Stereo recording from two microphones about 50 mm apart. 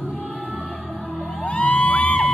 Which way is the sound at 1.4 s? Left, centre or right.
Left.